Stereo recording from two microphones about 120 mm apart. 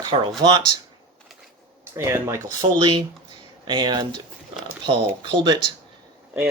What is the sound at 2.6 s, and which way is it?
Speech, 40° right (ahead or behind).